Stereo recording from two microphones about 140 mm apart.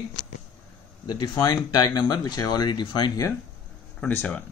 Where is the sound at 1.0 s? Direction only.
30° left (ahead or behind).